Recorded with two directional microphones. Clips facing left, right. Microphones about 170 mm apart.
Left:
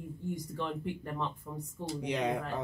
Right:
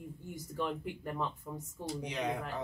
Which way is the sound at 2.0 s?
60° left (ahead or behind).